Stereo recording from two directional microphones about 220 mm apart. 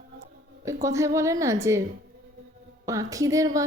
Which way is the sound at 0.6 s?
15° right (ahead or behind).